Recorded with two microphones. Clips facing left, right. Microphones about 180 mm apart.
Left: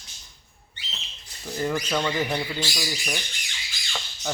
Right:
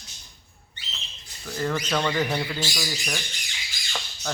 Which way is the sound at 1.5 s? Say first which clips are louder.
Left 1 dB; 15° left (ahead or behind).